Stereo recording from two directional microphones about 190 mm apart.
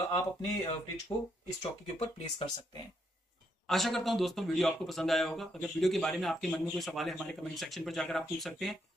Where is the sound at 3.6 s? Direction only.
Centre (ahead or behind).